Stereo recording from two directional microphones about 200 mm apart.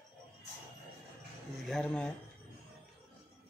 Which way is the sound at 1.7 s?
5° left (ahead or behind).